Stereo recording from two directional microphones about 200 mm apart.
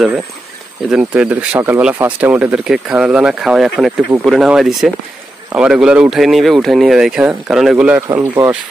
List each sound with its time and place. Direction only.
0.8 s speech: 5° right (ahead or behind)